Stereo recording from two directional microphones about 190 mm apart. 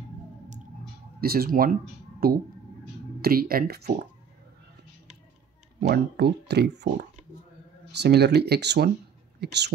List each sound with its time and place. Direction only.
1.2 s speech: 55° right (ahead or behind)
5.8 s speech: 55° right (ahead or behind)